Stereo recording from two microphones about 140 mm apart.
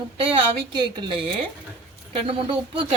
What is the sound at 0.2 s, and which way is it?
Speech, 35° right (ahead or behind).